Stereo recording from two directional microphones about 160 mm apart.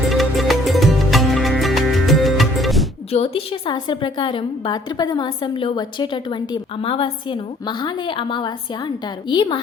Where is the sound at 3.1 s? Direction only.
40° left (ahead or behind).